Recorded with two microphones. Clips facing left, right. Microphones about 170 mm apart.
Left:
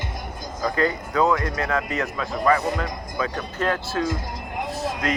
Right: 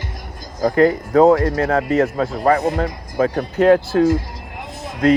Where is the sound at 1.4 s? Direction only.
30° right (ahead or behind).